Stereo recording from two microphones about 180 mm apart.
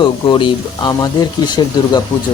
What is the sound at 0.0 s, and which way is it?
Speech, 30° left (ahead or behind).